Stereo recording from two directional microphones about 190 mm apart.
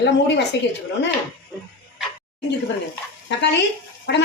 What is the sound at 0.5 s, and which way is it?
Speech, 65° left (ahead or behind).